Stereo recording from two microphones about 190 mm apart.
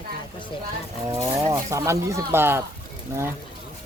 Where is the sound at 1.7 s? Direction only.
15° right (ahead or behind).